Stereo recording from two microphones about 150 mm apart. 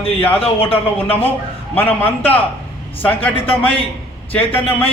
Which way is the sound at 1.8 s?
10° left (ahead or behind).